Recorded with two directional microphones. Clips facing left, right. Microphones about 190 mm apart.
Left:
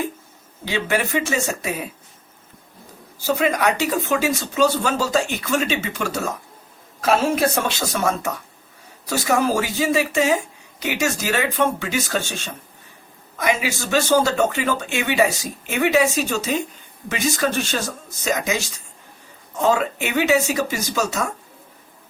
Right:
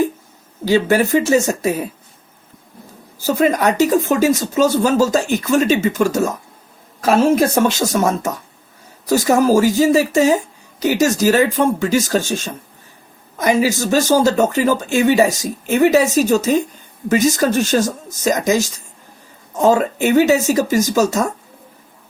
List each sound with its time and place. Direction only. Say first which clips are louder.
0.6 s speech: right 8 dB; 40° right (ahead or behind)
3.2 s speech: right 4 dB; 45° right (ahead or behind)